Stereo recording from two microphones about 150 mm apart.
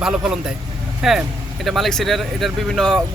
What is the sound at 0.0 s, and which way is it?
Speech, 5° right (ahead or behind).